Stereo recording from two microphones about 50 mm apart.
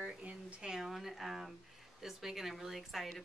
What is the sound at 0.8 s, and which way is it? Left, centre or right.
Speech, centre.